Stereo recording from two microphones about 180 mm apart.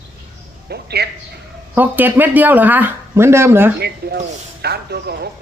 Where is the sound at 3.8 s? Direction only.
65° right (ahead or behind).